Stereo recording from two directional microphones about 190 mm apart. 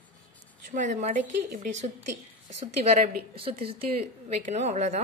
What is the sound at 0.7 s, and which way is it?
A woman's voice, 40° right (ahead or behind).